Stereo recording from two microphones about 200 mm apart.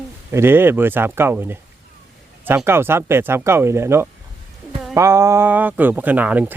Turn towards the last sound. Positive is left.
turn(degrees=-10)  # may be behind; listen again after turning